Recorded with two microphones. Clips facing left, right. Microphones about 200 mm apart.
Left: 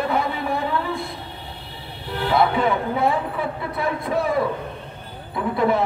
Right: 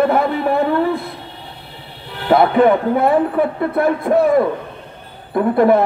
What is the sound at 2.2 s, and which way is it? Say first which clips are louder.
A man's voice: right 8 dB; 55° right (ahead or behind).